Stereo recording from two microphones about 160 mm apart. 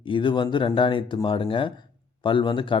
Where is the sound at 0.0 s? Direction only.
30° left (ahead or behind).